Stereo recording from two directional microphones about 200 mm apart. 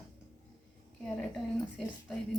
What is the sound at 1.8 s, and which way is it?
Speech, centre (ahead or behind).